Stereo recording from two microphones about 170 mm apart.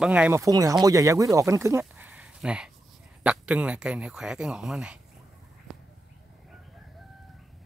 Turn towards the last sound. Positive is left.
turn(degrees=0)  # may be behind; listen again after turning